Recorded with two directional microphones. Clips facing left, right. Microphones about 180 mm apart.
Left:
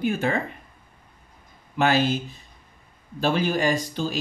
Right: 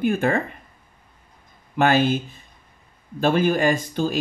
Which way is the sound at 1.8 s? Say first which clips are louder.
Right 3 dB; 55° right (ahead or behind).